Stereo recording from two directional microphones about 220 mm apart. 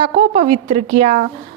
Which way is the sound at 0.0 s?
25° right (ahead or behind).